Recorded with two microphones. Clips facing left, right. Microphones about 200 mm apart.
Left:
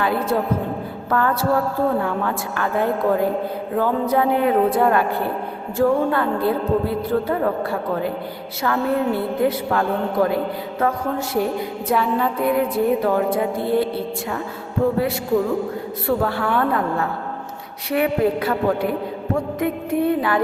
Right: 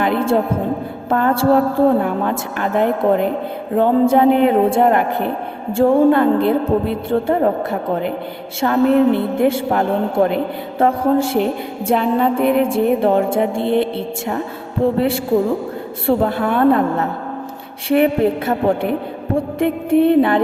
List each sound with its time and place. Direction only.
0.0 s a man's voice: 25° right (ahead or behind)